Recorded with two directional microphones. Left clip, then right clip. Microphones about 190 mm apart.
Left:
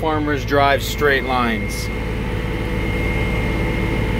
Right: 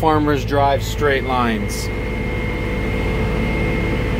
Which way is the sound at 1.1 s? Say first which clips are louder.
Even; 10° right (ahead or behind).